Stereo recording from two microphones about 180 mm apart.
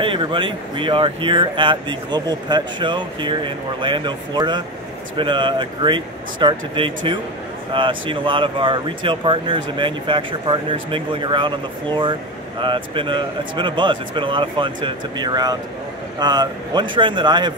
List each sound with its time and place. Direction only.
0.0 s speech: 30° right (ahead or behind)